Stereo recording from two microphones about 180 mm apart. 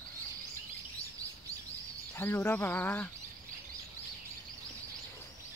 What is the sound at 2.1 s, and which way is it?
Speech, 10° left (ahead or behind).